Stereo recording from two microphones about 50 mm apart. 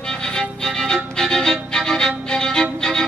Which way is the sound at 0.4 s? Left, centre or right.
Centre.